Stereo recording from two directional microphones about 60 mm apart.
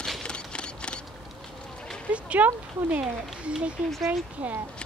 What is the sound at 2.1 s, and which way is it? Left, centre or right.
Speech, right.